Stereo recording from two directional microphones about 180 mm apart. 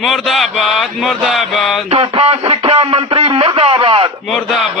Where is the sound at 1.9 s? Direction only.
30° right (ahead or behind).